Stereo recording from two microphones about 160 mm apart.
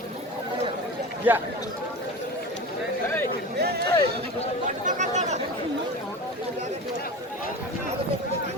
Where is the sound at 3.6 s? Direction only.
80° right.